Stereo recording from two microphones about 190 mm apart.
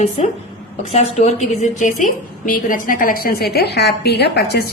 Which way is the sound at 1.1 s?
40° left (ahead or behind).